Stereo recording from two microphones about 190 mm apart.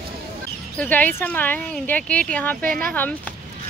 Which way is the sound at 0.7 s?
10° left (ahead or behind).